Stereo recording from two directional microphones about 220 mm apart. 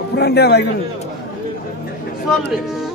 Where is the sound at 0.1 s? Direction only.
45° left (ahead or behind).